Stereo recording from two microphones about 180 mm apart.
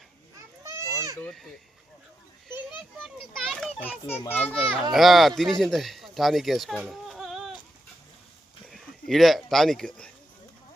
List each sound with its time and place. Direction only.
0.6 s children playing: 15° right (ahead or behind)
1.2 s a child's voice: centre (ahead or behind)
8.7 s speech: centre (ahead or behind)